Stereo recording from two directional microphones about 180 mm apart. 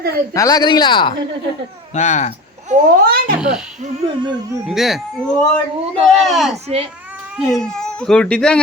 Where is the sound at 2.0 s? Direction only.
40° left (ahead or behind).